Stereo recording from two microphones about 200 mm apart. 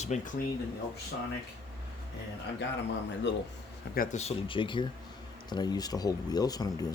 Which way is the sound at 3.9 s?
40° left (ahead or behind).